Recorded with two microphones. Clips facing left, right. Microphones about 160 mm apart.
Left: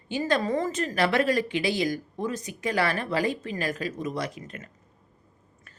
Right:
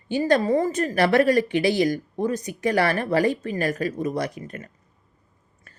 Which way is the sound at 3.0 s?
50° right (ahead or behind).